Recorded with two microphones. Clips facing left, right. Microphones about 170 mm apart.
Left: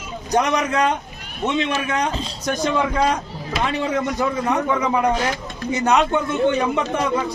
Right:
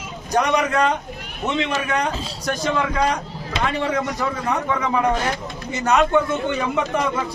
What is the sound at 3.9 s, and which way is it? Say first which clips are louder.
A man's voice: left 2 dB; 20° left (ahead or behind).